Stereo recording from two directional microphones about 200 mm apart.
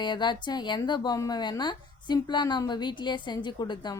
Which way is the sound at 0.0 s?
20° left (ahead or behind).